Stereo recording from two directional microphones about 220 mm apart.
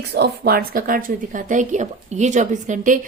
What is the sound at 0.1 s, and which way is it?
A woman's voice, 45° right (ahead or behind).